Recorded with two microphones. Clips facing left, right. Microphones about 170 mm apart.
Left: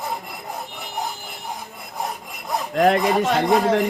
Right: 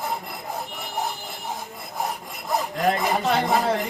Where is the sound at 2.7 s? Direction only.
70° left (ahead or behind).